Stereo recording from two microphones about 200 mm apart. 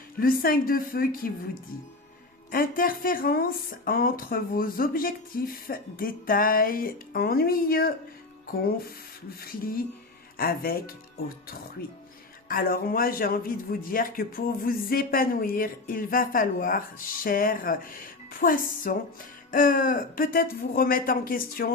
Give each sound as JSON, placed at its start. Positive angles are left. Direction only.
{"t": 0.2, "sound": "a man's voice", "side_deg": 45}
{"t": 2.5, "sound": "a man's voice", "side_deg": 45}
{"t": 9.4, "sound": "a man's voice", "side_deg": 45}
{"t": 12.5, "sound": "a man's voice", "side_deg": 45}